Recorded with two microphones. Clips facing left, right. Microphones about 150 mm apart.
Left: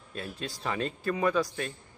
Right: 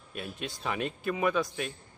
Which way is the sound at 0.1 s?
15° right (ahead or behind).